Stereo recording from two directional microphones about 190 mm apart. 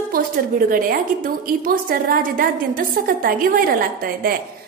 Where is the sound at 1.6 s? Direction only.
50° right (ahead or behind).